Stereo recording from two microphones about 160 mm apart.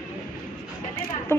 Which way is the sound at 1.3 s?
15° left (ahead or behind).